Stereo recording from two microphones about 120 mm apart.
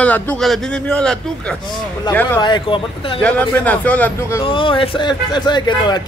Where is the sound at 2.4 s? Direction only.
40° left (ahead or behind).